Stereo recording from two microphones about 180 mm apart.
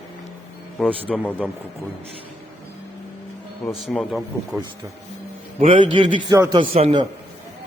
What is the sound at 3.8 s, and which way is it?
Speech, centre (ahead or behind).